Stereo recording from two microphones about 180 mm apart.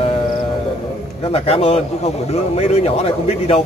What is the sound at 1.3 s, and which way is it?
Speech, 35° left (ahead or behind).